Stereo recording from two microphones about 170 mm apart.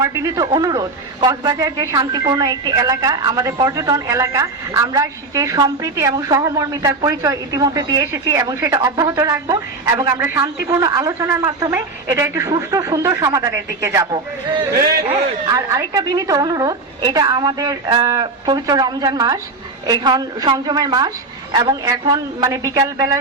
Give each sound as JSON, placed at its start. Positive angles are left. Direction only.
{"t": 0.0, "sound": "a man's voice", "side_deg": -20}